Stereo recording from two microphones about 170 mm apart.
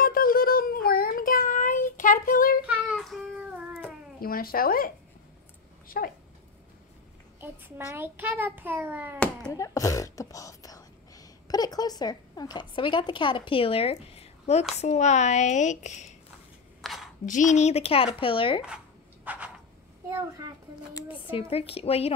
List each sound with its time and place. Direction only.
0.0 s child singing: 55° left (ahead or behind)
2.6 s child singing: 10° right (ahead or behind)
4.2 s speech: 60° left (ahead or behind)
7.3 s a child's voice: 10° right (ahead or behind)
9.5 s a woman's voice: 20° left (ahead or behind); by 16.1 s 45° left (ahead or behind)
16.8 s a sound: centre (ahead or behind)
17.3 s speech: 45° left (ahead or behind)
19.3 s a sound: 10° right (ahead or behind)
21.4 s speech: 35° left (ahead or behind)